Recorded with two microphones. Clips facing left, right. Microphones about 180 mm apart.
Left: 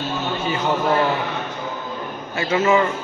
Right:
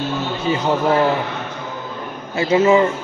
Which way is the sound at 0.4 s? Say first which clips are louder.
Right 3 dB; 35° right (ahead or behind).